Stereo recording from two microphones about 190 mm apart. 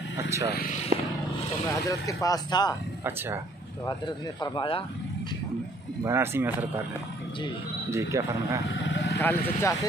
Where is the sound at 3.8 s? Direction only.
20° left (ahead or behind).